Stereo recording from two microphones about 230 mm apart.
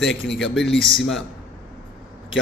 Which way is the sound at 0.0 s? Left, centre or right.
Centre.